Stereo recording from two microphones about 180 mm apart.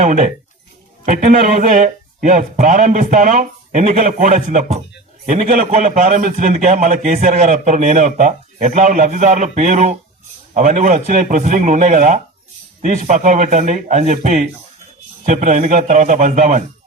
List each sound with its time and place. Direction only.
0.0 s a man's voice: 45° right (ahead or behind)